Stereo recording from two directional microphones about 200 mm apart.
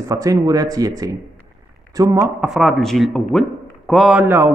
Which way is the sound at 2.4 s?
Centre (ahead or behind).